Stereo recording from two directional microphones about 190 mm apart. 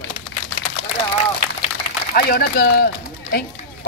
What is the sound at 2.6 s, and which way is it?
Run, 55° left (ahead or behind).